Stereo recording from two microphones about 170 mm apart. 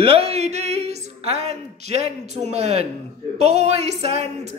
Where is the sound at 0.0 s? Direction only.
35° right (ahead or behind).